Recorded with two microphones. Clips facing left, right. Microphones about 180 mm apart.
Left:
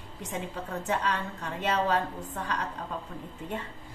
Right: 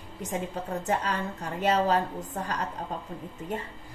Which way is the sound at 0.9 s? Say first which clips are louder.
Right 1 dB; 40° right (ahead or behind).